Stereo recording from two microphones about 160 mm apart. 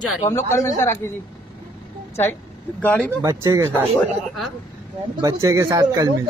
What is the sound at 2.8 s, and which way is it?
Speech, 10° left (ahead or behind).